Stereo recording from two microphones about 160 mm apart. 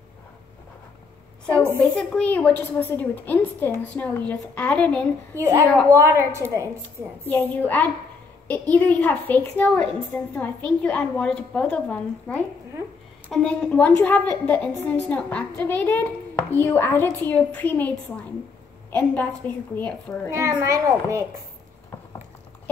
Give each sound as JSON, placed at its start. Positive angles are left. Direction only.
{"t": 1.5, "sound": "a woman's voice", "side_deg": -15}
{"t": 1.8, "sound": "a woman's voice", "side_deg": 5}
{"t": 5.3, "sound": "a woman's voice", "side_deg": -15}
{"t": 7.2, "sound": "a woman's voice", "side_deg": 10}
{"t": 20.2, "sound": "a child's voice", "side_deg": -20}